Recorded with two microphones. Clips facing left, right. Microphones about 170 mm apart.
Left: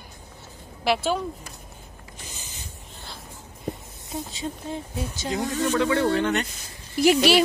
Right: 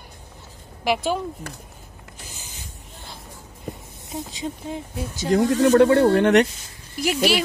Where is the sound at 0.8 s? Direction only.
15° right (ahead or behind).